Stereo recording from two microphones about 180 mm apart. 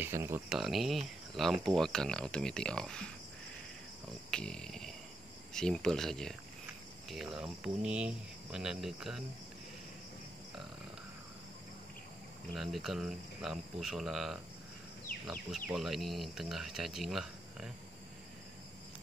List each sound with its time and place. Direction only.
0.0 s speech: 15° right (ahead or behind)
0.5 s speech: centre (ahead or behind)
4.3 s a sound: 5° left (ahead or behind)
5.5 s speech: 5° left (ahead or behind)
12.5 s speech: centre (ahead or behind)
15.5 s speech: centre (ahead or behind)